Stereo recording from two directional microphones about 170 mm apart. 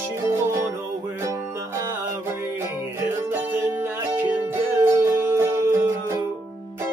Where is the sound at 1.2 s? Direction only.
15° right (ahead or behind).